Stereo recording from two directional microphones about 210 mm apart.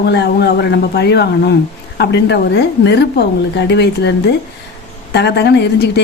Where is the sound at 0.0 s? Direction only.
50° left (ahead or behind).